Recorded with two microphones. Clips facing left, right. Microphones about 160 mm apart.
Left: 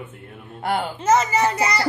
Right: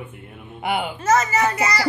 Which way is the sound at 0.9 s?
25° left (ahead or behind).